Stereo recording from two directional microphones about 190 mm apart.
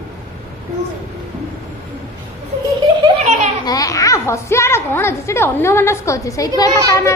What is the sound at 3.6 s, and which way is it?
A woman's voice, 20° left (ahead or behind).